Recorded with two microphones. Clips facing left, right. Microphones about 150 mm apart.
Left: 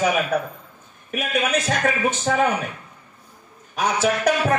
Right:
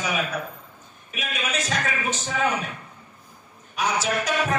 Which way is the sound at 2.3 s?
70° left (ahead or behind).